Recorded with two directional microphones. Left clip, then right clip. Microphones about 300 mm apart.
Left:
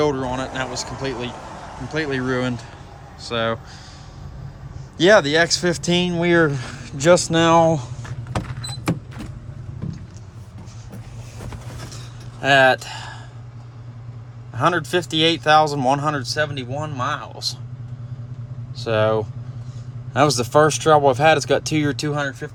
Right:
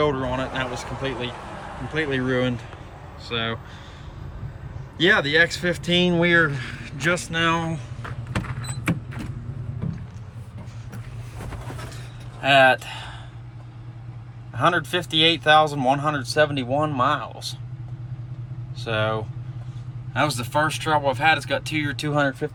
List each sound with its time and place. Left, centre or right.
0.0 s speech: centre
4.9 s speech: centre
12.4 s speech: centre
14.5 s speech: centre
18.8 s speech: centre
22.1 s speech: centre